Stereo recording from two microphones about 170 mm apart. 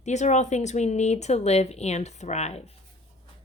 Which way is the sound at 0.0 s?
45° left (ahead or behind).